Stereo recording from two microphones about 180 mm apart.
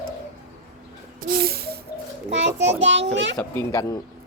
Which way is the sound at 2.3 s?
85° right.